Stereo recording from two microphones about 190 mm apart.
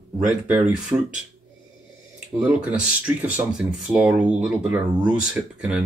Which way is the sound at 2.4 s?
5° right (ahead or behind).